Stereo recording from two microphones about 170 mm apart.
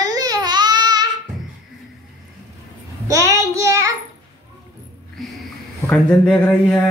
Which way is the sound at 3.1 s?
20° right (ahead or behind).